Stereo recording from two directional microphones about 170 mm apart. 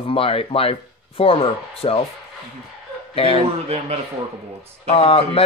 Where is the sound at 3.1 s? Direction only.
35° left (ahead or behind).